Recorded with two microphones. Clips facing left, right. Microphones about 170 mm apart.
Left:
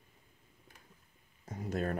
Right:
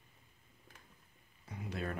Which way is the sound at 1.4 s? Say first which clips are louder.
Left 6 dB; 45° left (ahead or behind).